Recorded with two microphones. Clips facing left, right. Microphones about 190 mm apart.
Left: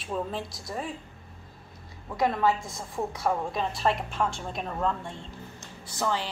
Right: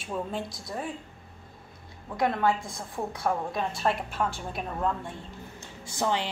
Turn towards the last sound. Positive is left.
turn(degrees=-20)  # may be behind; listen again after turning